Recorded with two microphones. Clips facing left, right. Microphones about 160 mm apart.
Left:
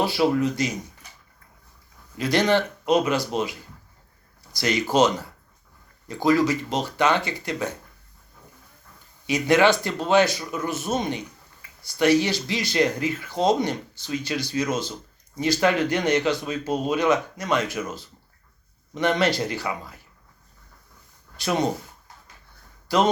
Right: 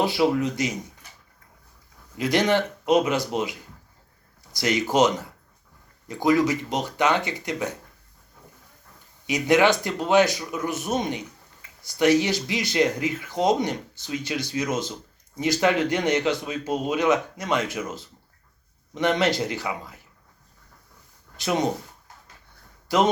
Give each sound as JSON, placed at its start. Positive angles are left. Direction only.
{"t": 0.0, "sound": "speech", "side_deg": -20}
{"t": 2.1, "sound": "speech", "side_deg": -20}
{"t": 9.2, "sound": "a man's voice", "side_deg": -15}
{"t": 21.3, "sound": "speech", "side_deg": -20}
{"t": 22.9, "sound": "speech", "side_deg": -20}